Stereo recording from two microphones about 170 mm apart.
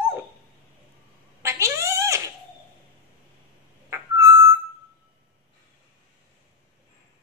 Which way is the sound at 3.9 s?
20° right (ahead or behind).